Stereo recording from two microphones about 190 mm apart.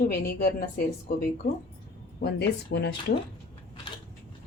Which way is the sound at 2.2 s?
60° left (ahead or behind).